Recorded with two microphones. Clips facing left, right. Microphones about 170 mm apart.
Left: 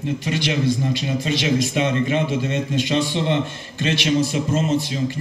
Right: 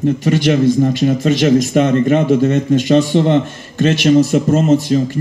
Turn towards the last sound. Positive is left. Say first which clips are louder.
# right 9 dB
turn(degrees=-45)  # may be behind; listen again after turning